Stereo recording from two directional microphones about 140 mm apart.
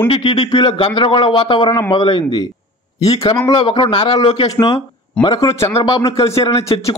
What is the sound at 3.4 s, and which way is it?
A man's voice, 35° left (ahead or behind).